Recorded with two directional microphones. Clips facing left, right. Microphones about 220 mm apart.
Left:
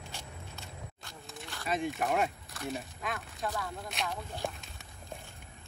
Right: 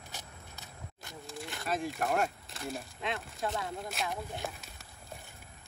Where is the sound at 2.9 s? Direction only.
25° right (ahead or behind).